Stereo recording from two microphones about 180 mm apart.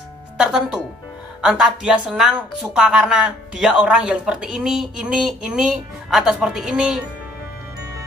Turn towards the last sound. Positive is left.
turn(degrees=0)  # may be behind; listen again after turning